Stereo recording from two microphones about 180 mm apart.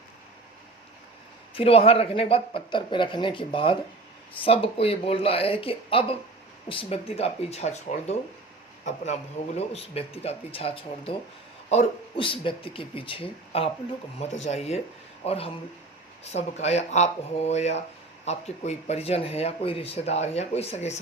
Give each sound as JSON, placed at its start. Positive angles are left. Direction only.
{"t": 1.5, "sound": "speech", "side_deg": 30}
{"t": 9.6, "sound": "speech", "side_deg": 35}